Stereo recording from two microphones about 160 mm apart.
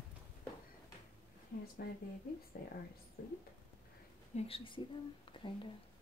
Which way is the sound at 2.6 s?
70° left (ahead or behind).